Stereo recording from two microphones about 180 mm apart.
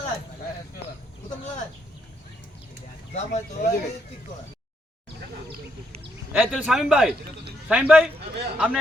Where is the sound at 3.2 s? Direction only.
40° left (ahead or behind).